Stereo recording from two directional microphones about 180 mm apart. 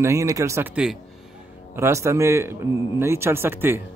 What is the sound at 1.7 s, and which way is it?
A man's voice, 15° right (ahead or behind).